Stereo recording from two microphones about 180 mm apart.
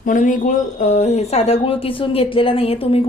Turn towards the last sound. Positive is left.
turn(degrees=30)  # may be behind; listen again after turning